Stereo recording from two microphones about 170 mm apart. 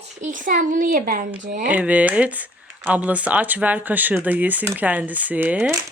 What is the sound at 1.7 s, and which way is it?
Speech, 10° right (ahead or behind).